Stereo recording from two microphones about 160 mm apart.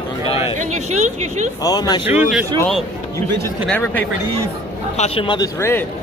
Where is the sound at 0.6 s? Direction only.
45° right (ahead or behind).